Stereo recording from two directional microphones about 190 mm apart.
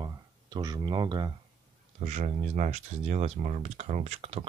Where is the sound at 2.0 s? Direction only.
40° right (ahead or behind).